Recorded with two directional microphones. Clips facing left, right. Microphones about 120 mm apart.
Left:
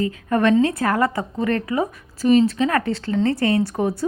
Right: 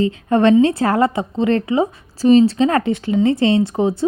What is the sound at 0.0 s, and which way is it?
A woman's voice, 25° right (ahead or behind).